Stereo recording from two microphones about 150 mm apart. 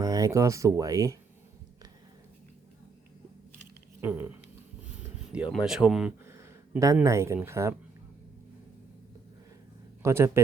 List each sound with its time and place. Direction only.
0.0 s speech: 25° right (ahead or behind)
4.0 s speech: 10° right (ahead or behind)
6.2 s a sound: 20° right (ahead or behind)
7.3 s speech: 15° right (ahead or behind)
10.0 s a man's voice: 20° right (ahead or behind)